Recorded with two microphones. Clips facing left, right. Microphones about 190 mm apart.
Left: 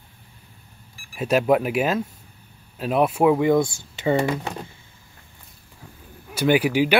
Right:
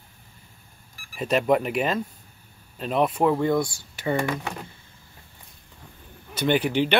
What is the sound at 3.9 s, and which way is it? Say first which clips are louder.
Speech: left 4 dB; 25° left (ahead or behind).